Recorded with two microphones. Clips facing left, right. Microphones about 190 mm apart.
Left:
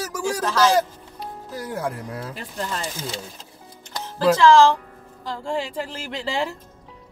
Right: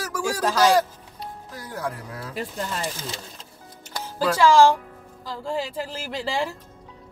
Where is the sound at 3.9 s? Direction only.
10° right (ahead or behind).